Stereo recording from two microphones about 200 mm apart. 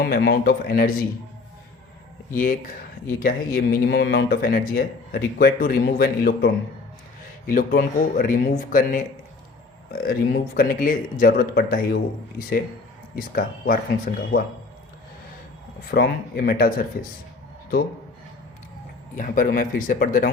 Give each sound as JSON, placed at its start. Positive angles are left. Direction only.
{"t": 0.0, "sound": "speech", "side_deg": 50}
{"t": 2.3, "sound": "speech", "side_deg": 40}
{"t": 15.9, "sound": "speech", "side_deg": 50}
{"t": 19.1, "sound": "speech", "side_deg": 40}